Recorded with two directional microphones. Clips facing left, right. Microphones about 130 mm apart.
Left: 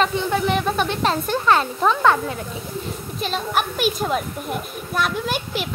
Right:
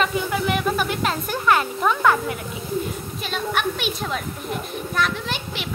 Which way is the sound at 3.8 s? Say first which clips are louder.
Left 5 dB; 45° left (ahead or behind).